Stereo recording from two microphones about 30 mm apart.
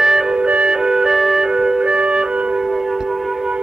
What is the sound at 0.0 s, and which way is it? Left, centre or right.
Music, centre.